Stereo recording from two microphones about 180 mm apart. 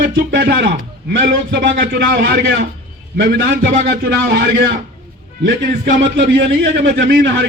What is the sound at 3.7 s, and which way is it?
Speech, 55° right (ahead or behind).